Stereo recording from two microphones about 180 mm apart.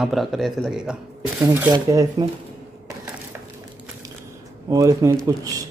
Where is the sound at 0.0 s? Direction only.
Centre (ahead or behind); by 2.2 s 20° right (ahead or behind).